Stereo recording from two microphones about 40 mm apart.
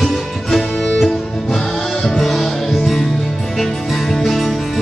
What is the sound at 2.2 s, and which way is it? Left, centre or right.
Music, centre.